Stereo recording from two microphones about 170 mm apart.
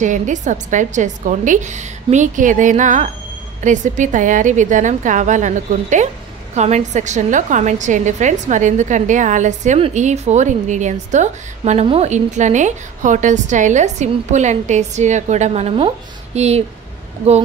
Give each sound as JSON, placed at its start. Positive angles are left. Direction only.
{"t": 0.0, "sound": "a woman's voice", "side_deg": -45}